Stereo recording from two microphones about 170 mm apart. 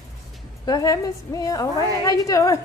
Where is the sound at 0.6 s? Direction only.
20° left (ahead or behind).